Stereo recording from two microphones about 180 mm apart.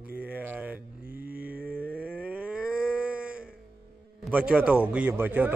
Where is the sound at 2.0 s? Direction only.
5° right (ahead or behind).